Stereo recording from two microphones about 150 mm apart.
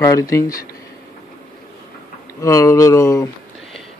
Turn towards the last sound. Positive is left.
turn(degrees=20)  # may be behind; listen again after turning